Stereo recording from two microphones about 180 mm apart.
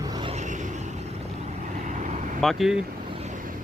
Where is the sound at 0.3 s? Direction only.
45° right (ahead or behind).